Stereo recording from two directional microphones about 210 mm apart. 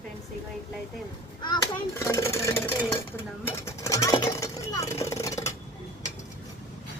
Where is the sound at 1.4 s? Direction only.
15° left (ahead or behind).